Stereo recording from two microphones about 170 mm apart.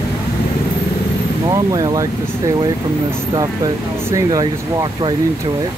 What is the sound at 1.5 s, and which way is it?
Speech, 20° right (ahead or behind).